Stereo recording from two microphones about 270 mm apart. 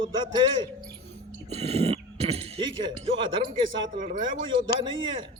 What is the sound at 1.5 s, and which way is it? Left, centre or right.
A man's voice, right.